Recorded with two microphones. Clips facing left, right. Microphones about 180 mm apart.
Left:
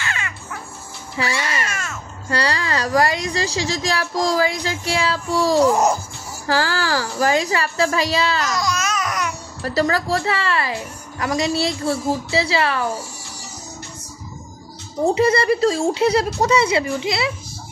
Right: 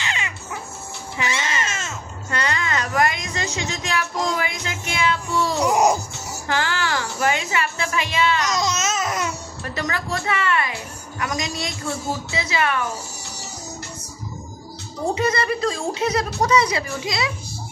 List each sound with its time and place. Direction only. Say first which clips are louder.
0.0 s a sound: even; 20° right (ahead or behind)
1.2 s speech: left 2 dB; 20° right (ahead or behind)
1.6 s music: left 1 dB; 20° right (ahead or behind)
2.2 s a woman's voice: left 3 dB; 35° left (ahead or behind)
5.7 s speech: left 1 dB; 10° right (ahead or behind)
6.4 s a woman's voice: left 3 dB; 35° left (ahead or behind)
8.4 s babbling: left 1 dB; 20° right (ahead or behind)
9.6 s a woman's voice: left 9 dB; 35° left (ahead or behind)
15.1 s speech: left 5 dB; 30° left (ahead or behind)